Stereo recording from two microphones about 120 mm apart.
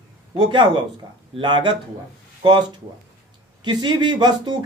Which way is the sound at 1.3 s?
40° right (ahead or behind).